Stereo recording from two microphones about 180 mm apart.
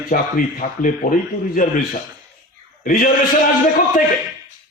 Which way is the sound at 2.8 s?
50° left (ahead or behind).